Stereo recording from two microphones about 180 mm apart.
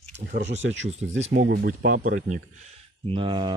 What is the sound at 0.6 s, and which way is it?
Speech, 90° right.